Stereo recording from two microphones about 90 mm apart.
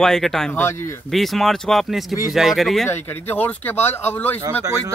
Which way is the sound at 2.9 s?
20° left (ahead or behind).